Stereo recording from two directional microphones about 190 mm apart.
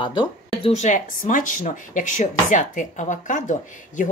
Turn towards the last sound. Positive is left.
turn(degrees=40)  # may be behind; listen again after turning